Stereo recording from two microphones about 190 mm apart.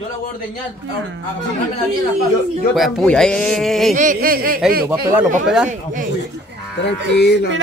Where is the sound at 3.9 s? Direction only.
45° right (ahead or behind).